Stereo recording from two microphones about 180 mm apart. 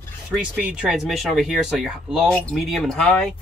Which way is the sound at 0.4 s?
5° right (ahead or behind).